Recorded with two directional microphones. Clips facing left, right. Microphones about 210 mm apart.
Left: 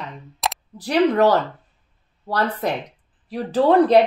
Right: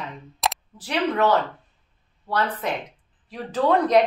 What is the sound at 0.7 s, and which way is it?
Speech, 35° left (ahead or behind).